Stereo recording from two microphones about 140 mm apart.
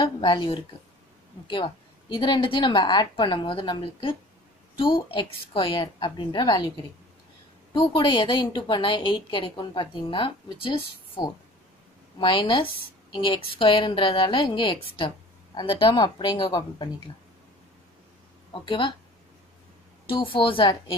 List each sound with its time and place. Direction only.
0.0 s a woman's voice: 35° left (ahead or behind)
7.7 s a woman's voice: 35° left (ahead or behind)
18.5 s a woman's voice: 35° left (ahead or behind)
20.1 s a woman's voice: 35° left (ahead or behind)